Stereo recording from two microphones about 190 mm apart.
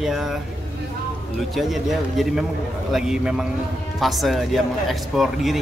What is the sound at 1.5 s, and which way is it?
A man's voice, centre (ahead or behind).